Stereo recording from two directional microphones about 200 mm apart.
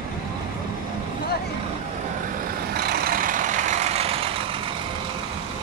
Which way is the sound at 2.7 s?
50° right (ahead or behind).